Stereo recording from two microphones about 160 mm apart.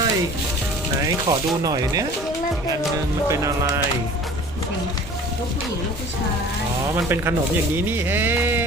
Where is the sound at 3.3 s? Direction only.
20° right (ahead or behind).